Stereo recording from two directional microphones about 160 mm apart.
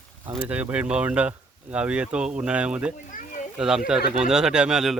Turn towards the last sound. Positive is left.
turn(degrees=0)  # may be behind; listen again after turning